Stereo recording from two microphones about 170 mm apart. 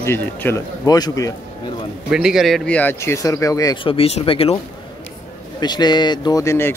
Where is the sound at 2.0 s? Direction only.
5° right (ahead or behind); by 4.6 s 35° left (ahead or behind).